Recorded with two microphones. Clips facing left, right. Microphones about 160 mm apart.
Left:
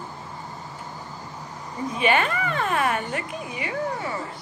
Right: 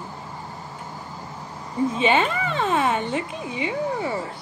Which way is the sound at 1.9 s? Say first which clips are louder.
Left 1 dB; 20° right (ahead or behind).